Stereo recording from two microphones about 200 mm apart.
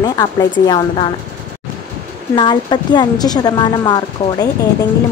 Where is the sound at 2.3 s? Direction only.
20° left (ahead or behind).